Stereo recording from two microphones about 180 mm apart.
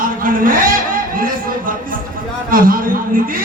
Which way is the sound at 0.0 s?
50° right (ahead or behind).